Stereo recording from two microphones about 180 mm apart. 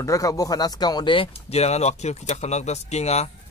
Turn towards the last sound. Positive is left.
turn(degrees=35)  # may be behind; listen again after turning